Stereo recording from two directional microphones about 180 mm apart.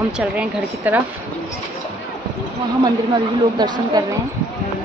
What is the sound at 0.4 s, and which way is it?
Speech, 10° right (ahead or behind).